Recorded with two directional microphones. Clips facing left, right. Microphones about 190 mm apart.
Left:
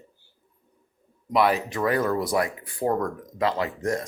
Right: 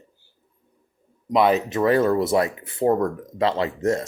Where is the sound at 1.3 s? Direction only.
20° right (ahead or behind).